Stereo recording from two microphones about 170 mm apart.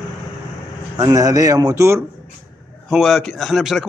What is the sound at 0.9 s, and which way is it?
A man's voice, 20° right (ahead or behind).